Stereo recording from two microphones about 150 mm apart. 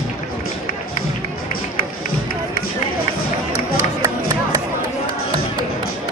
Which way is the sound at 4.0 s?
25° right (ahead or behind).